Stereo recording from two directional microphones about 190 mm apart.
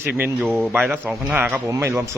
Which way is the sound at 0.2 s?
10° right (ahead or behind).